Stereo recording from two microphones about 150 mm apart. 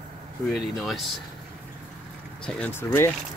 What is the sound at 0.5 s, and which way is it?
Speech, centre (ahead or behind).